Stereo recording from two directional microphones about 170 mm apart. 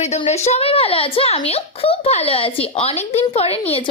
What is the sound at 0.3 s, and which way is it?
A woman's voice, 40° left (ahead or behind).